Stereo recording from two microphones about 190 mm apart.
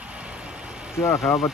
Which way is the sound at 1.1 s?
Centre (ahead or behind).